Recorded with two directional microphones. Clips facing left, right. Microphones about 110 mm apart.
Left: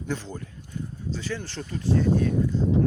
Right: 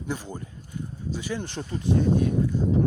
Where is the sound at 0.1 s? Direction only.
10° right (ahead or behind).